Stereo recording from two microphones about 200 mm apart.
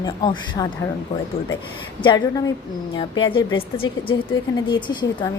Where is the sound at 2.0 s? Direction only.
20° left (ahead or behind).